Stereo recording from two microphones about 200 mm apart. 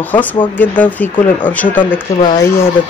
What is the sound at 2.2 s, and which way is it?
Speech, 25° left (ahead or behind).